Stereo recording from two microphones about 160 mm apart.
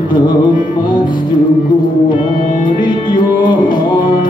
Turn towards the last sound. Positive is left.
turn(degrees=30)  # may be behind; listen again after turning